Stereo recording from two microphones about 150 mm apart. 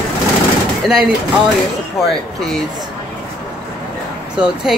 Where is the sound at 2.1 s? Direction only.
5° left (ahead or behind).